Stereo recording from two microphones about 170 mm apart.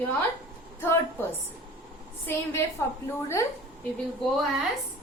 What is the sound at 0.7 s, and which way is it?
Speech, 15° left (ahead or behind).